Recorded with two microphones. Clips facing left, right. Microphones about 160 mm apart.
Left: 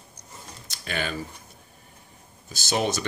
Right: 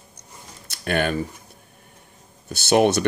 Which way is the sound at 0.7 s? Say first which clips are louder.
Right 8 dB; 55° right (ahead or behind).